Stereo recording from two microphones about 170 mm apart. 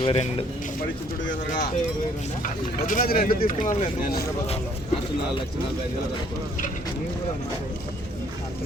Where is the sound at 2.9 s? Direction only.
50° left (ahead or behind).